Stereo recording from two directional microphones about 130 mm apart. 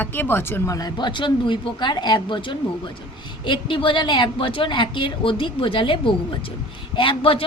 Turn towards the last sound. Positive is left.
turn(degrees=45)  # may be behind; listen again after turning